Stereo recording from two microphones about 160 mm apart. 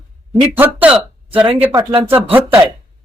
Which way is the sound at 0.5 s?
10° right (ahead or behind).